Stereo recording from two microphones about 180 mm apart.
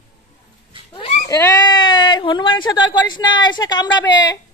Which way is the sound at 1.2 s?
20° left (ahead or behind).